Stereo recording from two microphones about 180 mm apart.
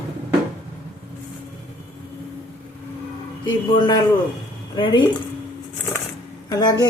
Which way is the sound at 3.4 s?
25° left (ahead or behind).